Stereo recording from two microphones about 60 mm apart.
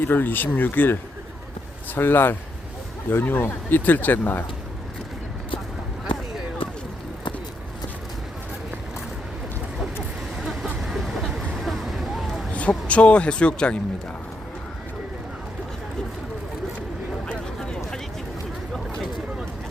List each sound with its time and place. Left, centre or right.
0.0 s speech: left
2.0 s speech: left
10.3 s vehicle: centre
12.5 s speech: left
17.2 s a sound: centre